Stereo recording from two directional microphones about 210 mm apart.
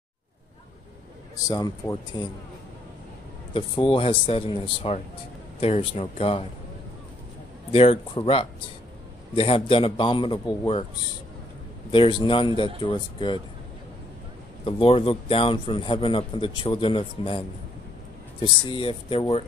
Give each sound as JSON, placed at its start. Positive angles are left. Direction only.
{"t": 1.5, "sound": "speech", "side_deg": 20}
{"t": 3.5, "sound": "a man's voice", "side_deg": 25}
{"t": 7.7, "sound": "a man's voice", "side_deg": 25}
{"t": 9.3, "sound": "a man's voice", "side_deg": 25}
{"t": 11.9, "sound": "a man's voice", "side_deg": 25}
{"t": 14.6, "sound": "a man's voice", "side_deg": 25}
{"t": 18.4, "sound": "a man's voice", "side_deg": 25}